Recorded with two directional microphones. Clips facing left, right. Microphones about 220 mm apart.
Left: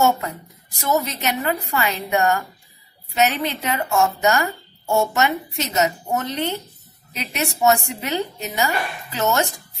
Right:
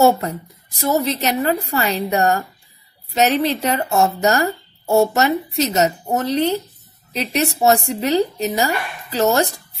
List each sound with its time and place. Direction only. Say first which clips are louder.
0.0 s speech: right 5 dB; 35° right (ahead or behind)